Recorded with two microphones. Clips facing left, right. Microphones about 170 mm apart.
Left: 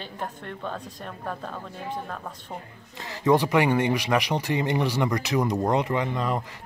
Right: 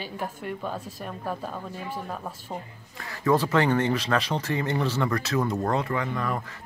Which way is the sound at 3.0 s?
20° left (ahead or behind).